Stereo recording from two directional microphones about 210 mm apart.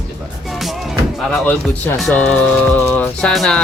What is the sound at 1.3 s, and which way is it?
Speech, 5° left (ahead or behind).